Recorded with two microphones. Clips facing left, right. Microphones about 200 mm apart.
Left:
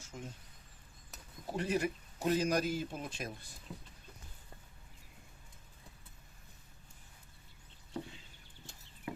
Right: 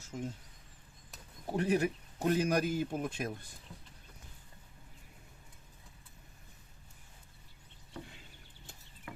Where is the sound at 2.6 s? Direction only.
55° right (ahead or behind).